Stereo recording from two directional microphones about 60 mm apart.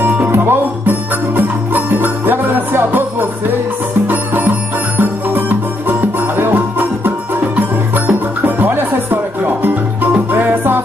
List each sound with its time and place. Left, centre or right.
0.0 s music: right